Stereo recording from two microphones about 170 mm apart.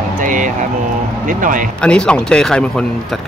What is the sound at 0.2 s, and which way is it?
Music, 50° right (ahead or behind).